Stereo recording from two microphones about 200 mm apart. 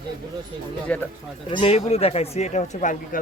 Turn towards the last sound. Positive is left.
turn(degrees=40)  # may be behind; listen again after turning